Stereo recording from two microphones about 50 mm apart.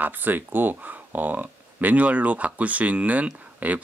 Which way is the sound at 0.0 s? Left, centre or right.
Right.